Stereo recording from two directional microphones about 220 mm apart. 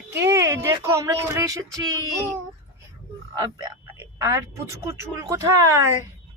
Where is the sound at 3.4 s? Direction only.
15° right (ahead or behind).